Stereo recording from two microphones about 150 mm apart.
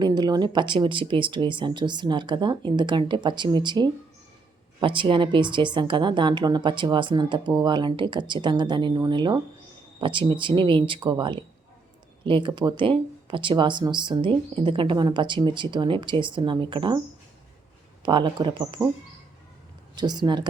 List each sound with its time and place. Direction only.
0.0 s speech: 30° right (ahead or behind)
18.0 s speech: 30° right (ahead or behind)
20.0 s speech: 30° right (ahead or behind)